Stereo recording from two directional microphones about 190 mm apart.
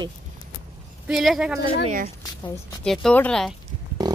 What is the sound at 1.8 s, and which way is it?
Speech, 40° right (ahead or behind).